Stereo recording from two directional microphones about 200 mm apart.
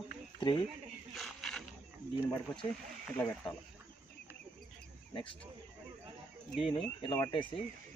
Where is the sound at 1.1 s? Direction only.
Centre (ahead or behind).